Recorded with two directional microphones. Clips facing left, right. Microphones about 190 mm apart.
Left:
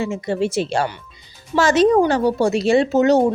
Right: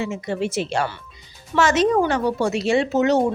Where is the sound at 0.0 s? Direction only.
35° left (ahead or behind).